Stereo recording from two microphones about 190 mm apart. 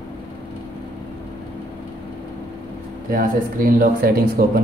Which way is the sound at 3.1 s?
50° right (ahead or behind).